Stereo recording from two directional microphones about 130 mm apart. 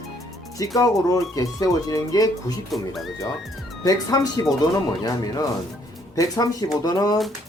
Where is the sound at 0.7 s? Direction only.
25° left (ahead or behind).